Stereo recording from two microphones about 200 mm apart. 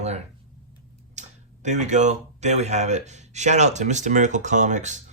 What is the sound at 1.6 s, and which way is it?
Speech, 35° right (ahead or behind).